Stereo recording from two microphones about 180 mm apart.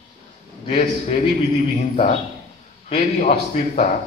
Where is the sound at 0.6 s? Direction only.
30° left (ahead or behind).